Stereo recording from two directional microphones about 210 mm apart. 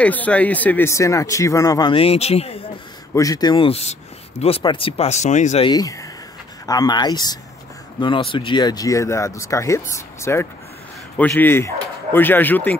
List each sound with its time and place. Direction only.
0.0 s speech: 5° left (ahead or behind); by 2.6 s 30° left (ahead or behind)
3.2 s speech: 15° left (ahead or behind); by 5.7 s 35° left (ahead or behind)
5.7 s speech: 15° left (ahead or behind)